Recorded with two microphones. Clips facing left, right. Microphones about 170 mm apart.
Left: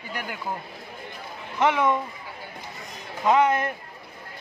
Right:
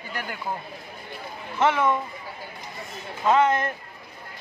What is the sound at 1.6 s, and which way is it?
Speech, 15° left (ahead or behind).